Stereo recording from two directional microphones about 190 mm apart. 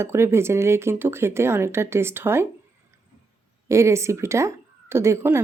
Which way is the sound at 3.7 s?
15° right (ahead or behind).